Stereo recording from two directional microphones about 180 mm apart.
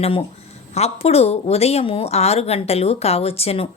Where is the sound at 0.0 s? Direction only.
35° left (ahead or behind).